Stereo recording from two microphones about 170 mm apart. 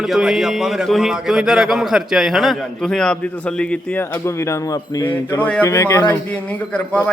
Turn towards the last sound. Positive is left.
turn(degrees=10)  # may be behind; listen again after turning